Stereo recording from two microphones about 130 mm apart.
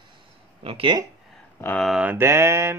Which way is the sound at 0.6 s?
45° right (ahead or behind).